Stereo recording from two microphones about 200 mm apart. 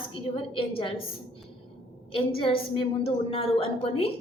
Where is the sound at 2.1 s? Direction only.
25° left (ahead or behind).